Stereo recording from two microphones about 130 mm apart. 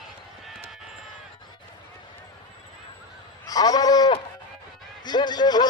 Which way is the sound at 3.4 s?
30° left (ahead or behind).